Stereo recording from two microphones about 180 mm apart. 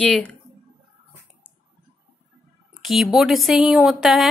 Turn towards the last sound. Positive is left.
turn(degrees=0)  # may be behind; listen again after turning